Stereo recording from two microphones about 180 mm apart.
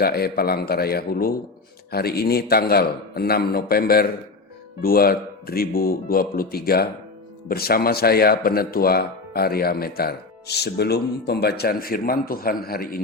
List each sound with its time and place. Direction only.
0.0 s speech: 60° left (ahead or behind)